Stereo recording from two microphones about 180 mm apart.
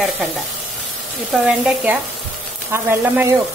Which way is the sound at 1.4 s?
5° right (ahead or behind).